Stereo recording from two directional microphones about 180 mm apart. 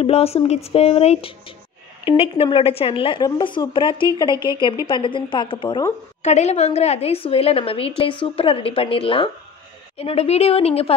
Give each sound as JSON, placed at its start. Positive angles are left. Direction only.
{"t": 0.0, "sound": "a woman's voice", "side_deg": 35}
{"t": 6.2, "sound": "a woman's voice", "side_deg": 40}